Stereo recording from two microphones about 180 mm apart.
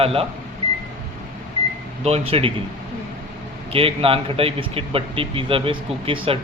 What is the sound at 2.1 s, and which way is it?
Speech, 35° right (ahead or behind).